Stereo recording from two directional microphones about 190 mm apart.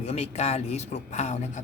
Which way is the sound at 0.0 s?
35° left (ahead or behind).